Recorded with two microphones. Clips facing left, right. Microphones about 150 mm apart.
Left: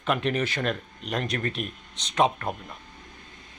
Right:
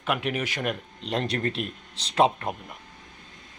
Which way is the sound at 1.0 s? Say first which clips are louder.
Right 3 dB; 30° right (ahead or behind).